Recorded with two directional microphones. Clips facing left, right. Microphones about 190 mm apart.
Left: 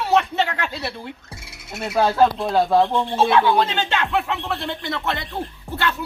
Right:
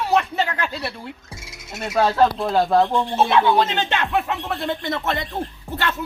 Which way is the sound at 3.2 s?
20° right (ahead or behind).